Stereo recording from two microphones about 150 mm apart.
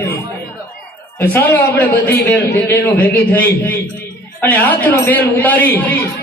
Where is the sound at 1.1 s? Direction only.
15° left (ahead or behind).